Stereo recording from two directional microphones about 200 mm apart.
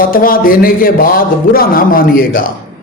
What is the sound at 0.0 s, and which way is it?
A man's voice, 45° left (ahead or behind).